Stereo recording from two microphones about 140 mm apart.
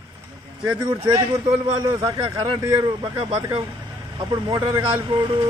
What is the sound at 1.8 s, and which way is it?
Speech, 25° right (ahead or behind).